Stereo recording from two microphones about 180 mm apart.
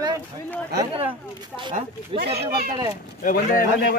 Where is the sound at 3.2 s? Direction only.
50° left (ahead or behind).